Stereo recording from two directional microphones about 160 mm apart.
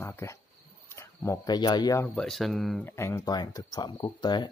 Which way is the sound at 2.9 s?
15° left (ahead or behind).